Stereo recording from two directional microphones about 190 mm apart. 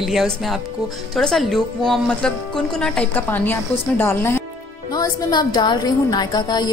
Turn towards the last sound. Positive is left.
turn(degrees=20)  # may be behind; listen again after turning